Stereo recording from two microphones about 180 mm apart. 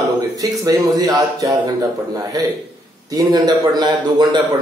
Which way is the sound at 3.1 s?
20° right (ahead or behind).